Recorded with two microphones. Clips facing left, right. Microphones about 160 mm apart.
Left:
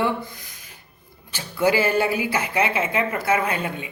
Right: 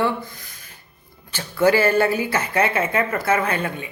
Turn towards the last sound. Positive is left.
turn(degrees=15)  # may be behind; listen again after turning